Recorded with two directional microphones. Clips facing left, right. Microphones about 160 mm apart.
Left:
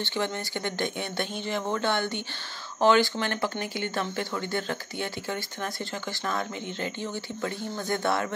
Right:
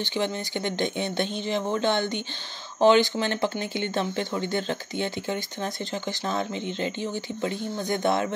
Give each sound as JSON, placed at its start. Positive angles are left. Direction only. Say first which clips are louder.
{"t": 0.0, "sound": "speech", "louder": "right 2 dB", "side_deg": -20}